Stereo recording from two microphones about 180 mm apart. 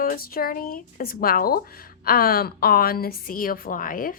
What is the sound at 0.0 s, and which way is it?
Speech, 50° left (ahead or behind).